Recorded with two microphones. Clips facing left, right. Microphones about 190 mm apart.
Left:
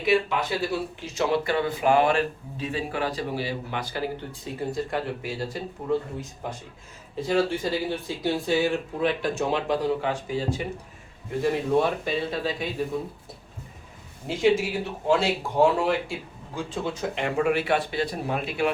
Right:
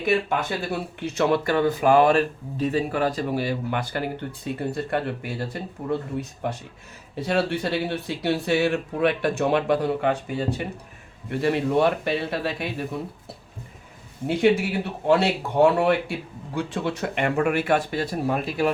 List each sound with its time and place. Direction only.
0.0 s speech: 50° right (ahead or behind)
11.3 s speech: 70° right (ahead or behind)
14.3 s speech: 60° right (ahead or behind); by 18.7 s 40° right (ahead or behind)